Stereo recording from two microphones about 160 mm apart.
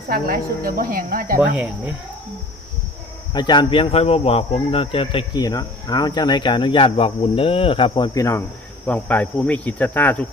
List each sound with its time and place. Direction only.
0.1 s speech: 65° right (ahead or behind)
1.4 s speech: 10° right (ahead or behind)
3.3 s speech: 25° left (ahead or behind)
8.9 s cricket: 10° left (ahead or behind)